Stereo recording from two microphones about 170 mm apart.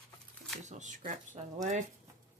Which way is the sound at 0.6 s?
45° right (ahead or behind).